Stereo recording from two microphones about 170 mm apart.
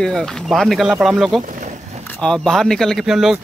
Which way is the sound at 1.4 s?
50° right (ahead or behind).